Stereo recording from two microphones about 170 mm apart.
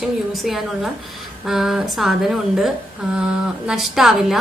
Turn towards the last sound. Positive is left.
turn(degrees=0)  # may be behind; listen again after turning